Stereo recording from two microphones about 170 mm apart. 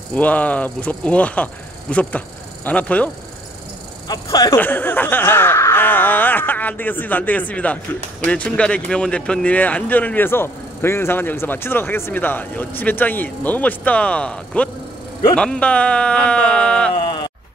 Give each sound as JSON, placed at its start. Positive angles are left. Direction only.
{"t": 0.1, "sound": "speech", "side_deg": 10}
{"t": 4.1, "sound": "speech", "side_deg": 20}
{"t": 4.6, "sound": "speech", "side_deg": 10}
{"t": 16.9, "sound": "bleat", "side_deg": 30}